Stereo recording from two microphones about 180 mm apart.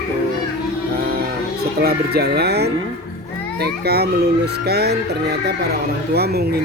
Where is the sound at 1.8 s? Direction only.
60° right (ahead or behind).